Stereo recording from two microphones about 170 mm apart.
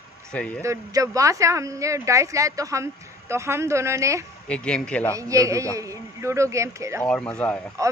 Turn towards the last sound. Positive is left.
turn(degrees=-20)  # may be behind; listen again after turning